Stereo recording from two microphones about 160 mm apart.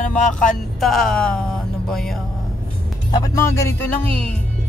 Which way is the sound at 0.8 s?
Centre (ahead or behind).